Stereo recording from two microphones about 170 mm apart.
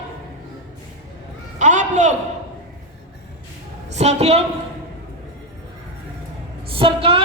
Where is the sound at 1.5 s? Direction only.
45° right (ahead or behind).